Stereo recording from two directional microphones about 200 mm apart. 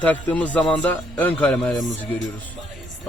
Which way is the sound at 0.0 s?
5° left (ahead or behind).